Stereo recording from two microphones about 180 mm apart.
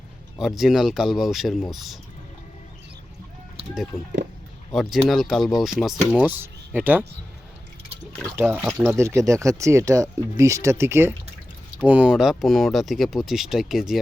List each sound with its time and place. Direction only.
0.3 s speech: centre (ahead or behind)
3.9 s speech: 15° left (ahead or behind)
4.7 s speech: centre (ahead or behind)
8.2 s speech: 10° right (ahead or behind)